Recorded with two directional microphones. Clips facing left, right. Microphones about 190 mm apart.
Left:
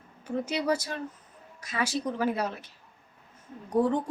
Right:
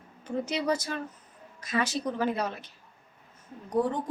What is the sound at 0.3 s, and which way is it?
Speech, 10° left (ahead or behind).